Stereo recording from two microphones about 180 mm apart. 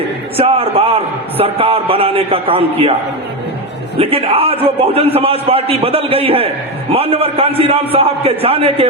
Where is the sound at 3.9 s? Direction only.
30° right (ahead or behind).